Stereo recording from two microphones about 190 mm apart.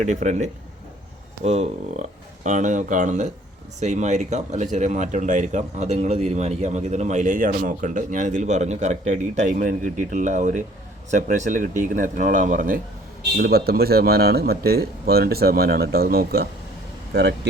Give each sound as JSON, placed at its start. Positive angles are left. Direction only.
{"t": 0.0, "sound": "speech", "side_deg": -40}